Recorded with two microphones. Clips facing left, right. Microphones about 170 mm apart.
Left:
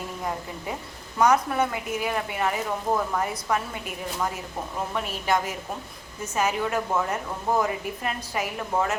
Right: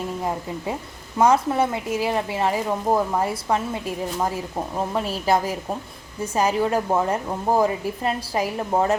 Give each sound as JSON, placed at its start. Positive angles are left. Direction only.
{"t": 1.2, "sound": "speech", "side_deg": -30}
{"t": 4.9, "sound": "a woman's voice", "side_deg": -35}